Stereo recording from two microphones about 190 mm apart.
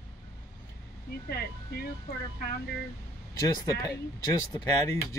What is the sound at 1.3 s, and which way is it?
Speech, 55° left (ahead or behind).